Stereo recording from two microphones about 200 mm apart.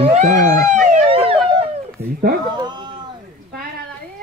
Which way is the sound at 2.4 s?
20° right (ahead or behind).